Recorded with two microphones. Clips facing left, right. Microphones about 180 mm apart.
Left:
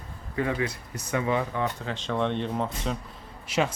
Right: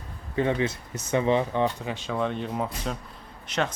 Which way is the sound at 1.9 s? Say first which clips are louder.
Left 1 dB; 5° right (ahead or behind).